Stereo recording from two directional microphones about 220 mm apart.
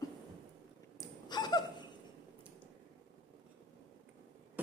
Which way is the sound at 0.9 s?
20° left (ahead or behind).